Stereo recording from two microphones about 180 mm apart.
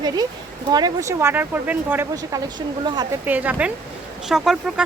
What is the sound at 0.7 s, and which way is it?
Speech, 20° right (ahead or behind).